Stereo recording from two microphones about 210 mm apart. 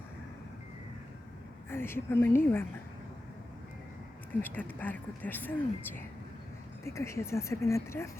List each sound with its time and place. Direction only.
1.7 s speech: 10° left (ahead or behind)
4.4 s speech: 10° left (ahead or behind)